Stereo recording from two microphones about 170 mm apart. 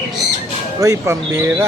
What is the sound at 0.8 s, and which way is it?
Speech, 15° right (ahead or behind).